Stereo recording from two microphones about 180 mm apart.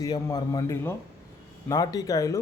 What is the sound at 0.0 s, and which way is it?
A man's voice, 20° left (ahead or behind).